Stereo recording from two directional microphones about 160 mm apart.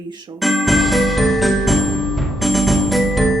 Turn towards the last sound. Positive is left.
turn(degrees=0)  # may be behind; listen again after turning